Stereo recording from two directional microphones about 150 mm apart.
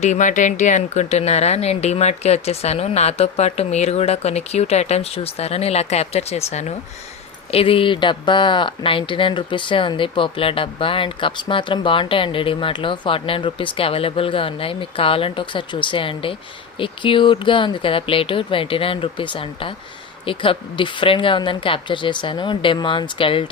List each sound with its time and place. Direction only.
0.0 s speech: 55° left (ahead or behind); by 23.5 s 35° left (ahead or behind)